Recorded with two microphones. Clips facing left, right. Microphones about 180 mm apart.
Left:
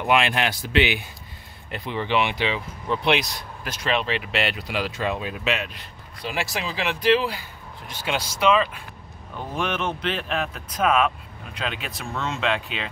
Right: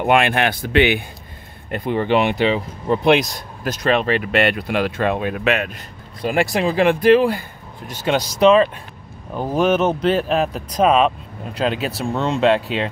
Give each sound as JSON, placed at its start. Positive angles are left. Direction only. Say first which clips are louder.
{"t": 0.0, "sound": "speech", "louder": "right 5 dB", "side_deg": -55}